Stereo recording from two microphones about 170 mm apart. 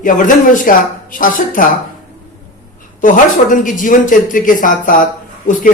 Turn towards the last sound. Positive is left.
turn(degrees=50)  # may be behind; listen again after turning